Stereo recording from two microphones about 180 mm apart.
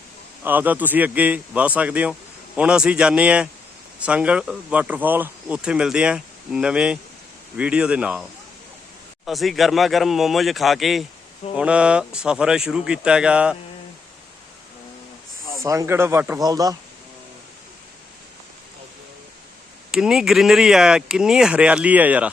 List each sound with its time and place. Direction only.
0.4 s a man's voice: 10° right (ahead or behind)
15.6 s a man's voice: 20° right (ahead or behind)
19.9 s speech: 5° right (ahead or behind)